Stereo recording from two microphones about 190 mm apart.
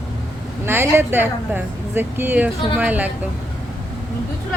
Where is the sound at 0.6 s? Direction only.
10° right (ahead or behind).